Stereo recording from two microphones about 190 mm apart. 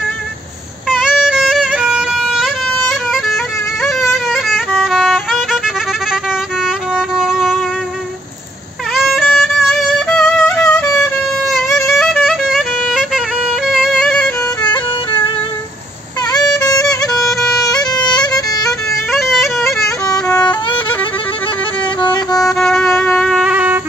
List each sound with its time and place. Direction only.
0.8 s music: 5° right (ahead or behind)
6.6 s music: 5° right (ahead or behind)
8.9 s music: centre (ahead or behind)
14.4 s music: 20° left (ahead or behind)
16.3 s music: 20° left (ahead or behind)
18.7 s bagpipes: centre (ahead or behind)
22.4 s music: centre (ahead or behind)